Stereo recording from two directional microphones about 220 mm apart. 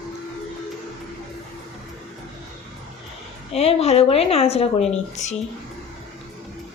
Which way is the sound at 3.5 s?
30° left (ahead or behind).